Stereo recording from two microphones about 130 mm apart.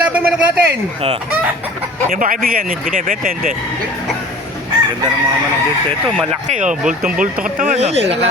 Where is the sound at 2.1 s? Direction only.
90° right.